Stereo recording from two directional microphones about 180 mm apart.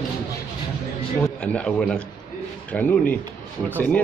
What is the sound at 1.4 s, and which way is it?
A man's voice, 5° left (ahead or behind).